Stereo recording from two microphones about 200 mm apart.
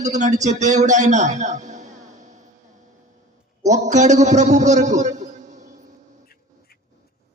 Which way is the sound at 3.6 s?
35° right (ahead or behind).